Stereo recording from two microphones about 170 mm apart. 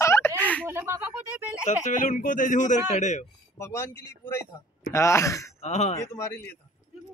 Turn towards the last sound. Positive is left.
turn(degrees=15)  # may be behind; listen again after turning